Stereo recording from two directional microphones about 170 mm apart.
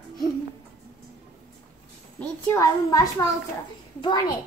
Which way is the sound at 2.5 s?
20° left (ahead or behind).